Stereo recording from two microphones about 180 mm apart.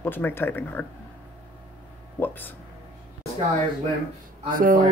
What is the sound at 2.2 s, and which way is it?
Speech, 10° left (ahead or behind).